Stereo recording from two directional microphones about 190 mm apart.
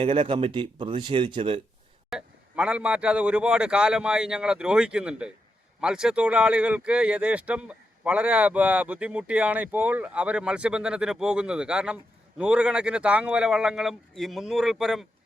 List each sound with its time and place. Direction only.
0.0 s speech: 30° right (ahead or behind)
2.0 s speech: 5° right (ahead or behind)